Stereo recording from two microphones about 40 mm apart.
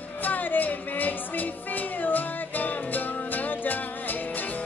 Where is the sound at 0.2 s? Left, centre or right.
Left.